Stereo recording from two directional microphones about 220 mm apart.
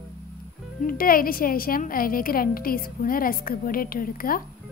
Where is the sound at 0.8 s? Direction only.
40° left (ahead or behind).